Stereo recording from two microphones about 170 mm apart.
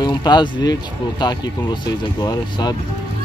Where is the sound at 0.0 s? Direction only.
25° left (ahead or behind).